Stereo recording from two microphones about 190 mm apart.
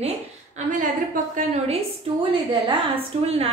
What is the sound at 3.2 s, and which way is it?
Speech, 30° right (ahead or behind).